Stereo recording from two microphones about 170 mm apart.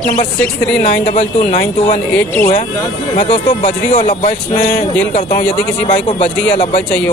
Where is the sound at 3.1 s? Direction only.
40° left (ahead or behind).